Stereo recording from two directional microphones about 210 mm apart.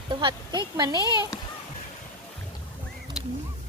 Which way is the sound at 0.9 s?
20° left (ahead or behind).